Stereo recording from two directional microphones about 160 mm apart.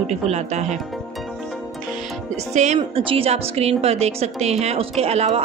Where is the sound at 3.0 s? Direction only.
35° right (ahead or behind).